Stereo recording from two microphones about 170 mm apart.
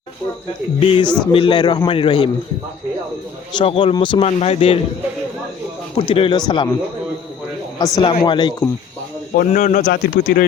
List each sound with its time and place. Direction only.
0.8 s a man's voice: 30° left (ahead or behind)
3.6 s a man's voice: 35° left (ahead or behind)
6.0 s speech: 35° left (ahead or behind)
7.8 s speech: 20° left (ahead or behind)
9.3 s a man's voice: 55° left (ahead or behind)